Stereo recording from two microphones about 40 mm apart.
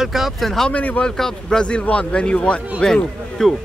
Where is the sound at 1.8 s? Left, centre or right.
Left.